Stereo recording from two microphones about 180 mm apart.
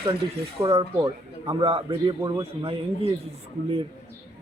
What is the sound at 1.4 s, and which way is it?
A man's voice, 35° right (ahead or behind).